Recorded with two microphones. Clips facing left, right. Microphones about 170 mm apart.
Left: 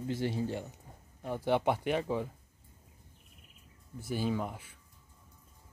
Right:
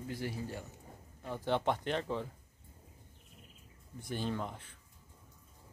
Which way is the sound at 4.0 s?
5° left (ahead or behind).